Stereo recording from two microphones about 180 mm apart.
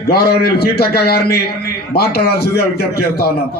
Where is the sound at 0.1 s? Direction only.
60° left (ahead or behind).